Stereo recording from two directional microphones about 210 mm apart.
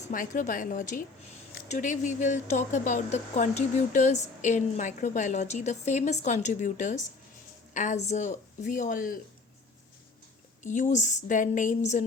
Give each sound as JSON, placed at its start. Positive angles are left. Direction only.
{"t": 0.1, "sound": "speech", "side_deg": 40}
{"t": 10.6, "sound": "speech", "side_deg": 35}